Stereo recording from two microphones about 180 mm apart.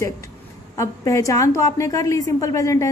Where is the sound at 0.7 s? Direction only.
15° left (ahead or behind).